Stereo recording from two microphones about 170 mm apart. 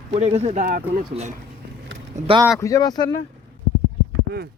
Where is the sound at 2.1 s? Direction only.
45° right (ahead or behind).